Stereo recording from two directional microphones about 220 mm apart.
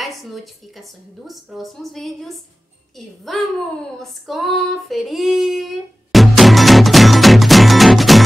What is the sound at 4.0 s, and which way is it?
Female singing, centre (ahead or behind).